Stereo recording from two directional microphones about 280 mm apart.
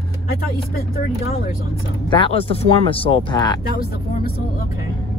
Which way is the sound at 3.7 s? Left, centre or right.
Left.